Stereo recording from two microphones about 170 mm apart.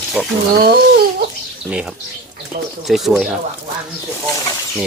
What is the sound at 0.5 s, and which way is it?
Speech, 65° right (ahead or behind).